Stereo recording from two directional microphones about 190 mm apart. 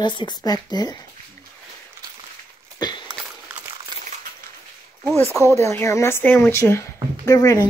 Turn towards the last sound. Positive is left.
turn(degrees=20)  # may be behind; listen again after turning